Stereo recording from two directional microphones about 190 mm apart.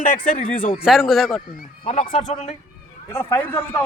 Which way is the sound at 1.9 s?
35° left (ahead or behind).